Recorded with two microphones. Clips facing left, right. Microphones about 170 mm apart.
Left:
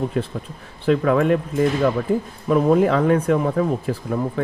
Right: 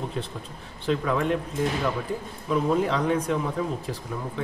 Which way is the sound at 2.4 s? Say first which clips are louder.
Left 7 dB; 55° left (ahead or behind).